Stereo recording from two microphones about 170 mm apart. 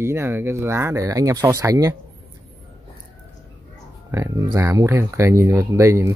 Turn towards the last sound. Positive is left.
turn(degrees=-15)  # may be behind; listen again after turning